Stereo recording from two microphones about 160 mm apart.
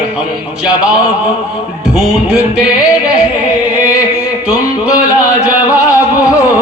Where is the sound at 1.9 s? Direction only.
5° right (ahead or behind).